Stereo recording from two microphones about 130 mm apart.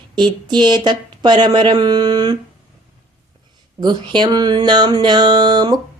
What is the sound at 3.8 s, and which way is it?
Speech, 35° right (ahead or behind).